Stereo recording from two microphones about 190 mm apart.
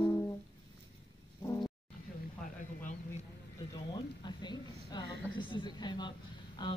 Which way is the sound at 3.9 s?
20° left (ahead or behind).